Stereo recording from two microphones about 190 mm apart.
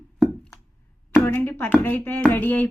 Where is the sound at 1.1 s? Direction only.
10° left (ahead or behind).